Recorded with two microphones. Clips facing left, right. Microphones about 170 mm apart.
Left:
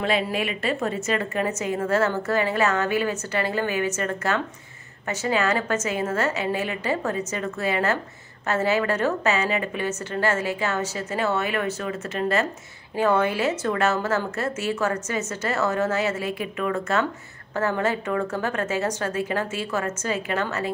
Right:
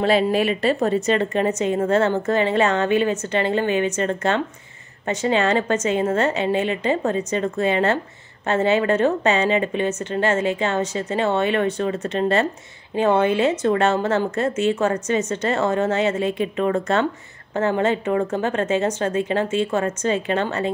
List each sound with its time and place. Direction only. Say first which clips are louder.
0.0 s a woman's voice: right 6 dB; 30° right (ahead or behind)